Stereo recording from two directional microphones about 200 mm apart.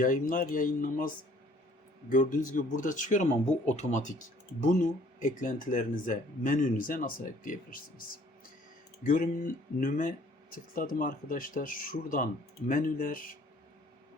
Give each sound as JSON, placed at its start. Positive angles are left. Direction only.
{"t": 0.0, "sound": "speech", "side_deg": 40}
{"t": 9.0, "sound": "speech", "side_deg": 45}